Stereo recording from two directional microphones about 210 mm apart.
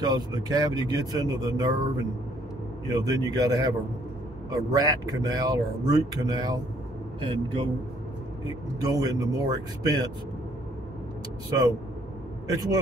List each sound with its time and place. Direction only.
0.0 s speech: 20° right (ahead or behind)